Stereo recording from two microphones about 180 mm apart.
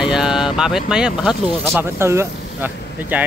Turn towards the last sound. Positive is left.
turn(degrees=-10)  # may be behind; listen again after turning